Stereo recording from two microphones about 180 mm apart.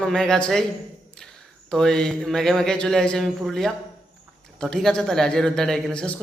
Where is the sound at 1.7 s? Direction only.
5° left (ahead or behind).